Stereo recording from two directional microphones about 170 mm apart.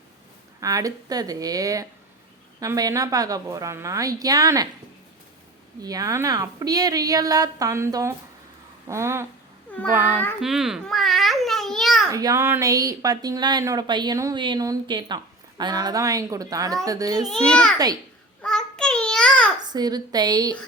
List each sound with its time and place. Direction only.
0.6 s speech: 20° right (ahead or behind)
5.8 s speech: 20° right (ahead or behind)
10.4 s babbling: centre (ahead or behind)
12.1 s speech: 20° right (ahead or behind)
17.2 s a child's voice: 5° left (ahead or behind)
18.4 s a sound: 5° left (ahead or behind)
19.6 s speech: 25° right (ahead or behind)